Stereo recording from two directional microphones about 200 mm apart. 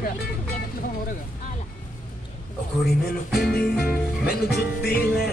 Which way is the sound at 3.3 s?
50° left (ahead or behind).